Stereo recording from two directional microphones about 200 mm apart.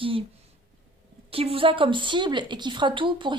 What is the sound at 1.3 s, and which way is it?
Speech, 30° right (ahead or behind).